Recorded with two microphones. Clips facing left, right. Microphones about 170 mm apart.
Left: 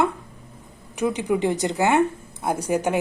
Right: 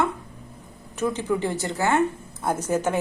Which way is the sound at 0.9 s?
15° left (ahead or behind).